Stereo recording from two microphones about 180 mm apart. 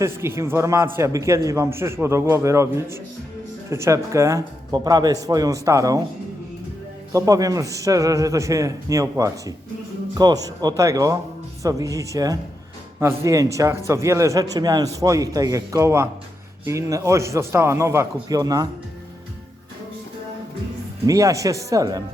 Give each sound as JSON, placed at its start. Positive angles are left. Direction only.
{"t": 0.0, "sound": "a man's voice", "side_deg": -15}
{"t": 7.1, "sound": "a man's voice", "side_deg": -20}
{"t": 21.1, "sound": "a man's voice", "side_deg": -20}